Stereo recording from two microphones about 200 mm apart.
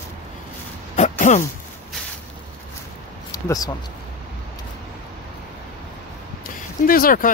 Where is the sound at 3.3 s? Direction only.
20° left (ahead or behind).